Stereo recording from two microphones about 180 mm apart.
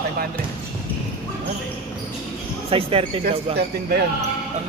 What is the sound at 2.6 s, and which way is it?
Speech, 30° right (ahead or behind).